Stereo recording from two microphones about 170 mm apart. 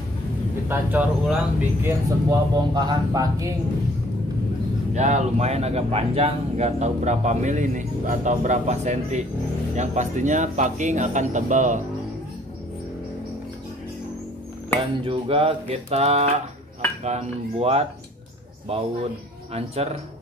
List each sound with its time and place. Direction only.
0.7 s speech: 10° right (ahead or behind)
4.9 s a man's voice: 45° right (ahead or behind)
15.0 s speech: 35° right (ahead or behind)